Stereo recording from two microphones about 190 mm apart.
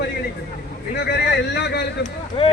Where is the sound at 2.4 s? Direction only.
30° left (ahead or behind).